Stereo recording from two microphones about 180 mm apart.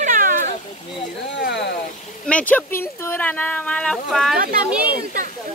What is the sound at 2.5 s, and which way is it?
Speech, 15° left (ahead or behind).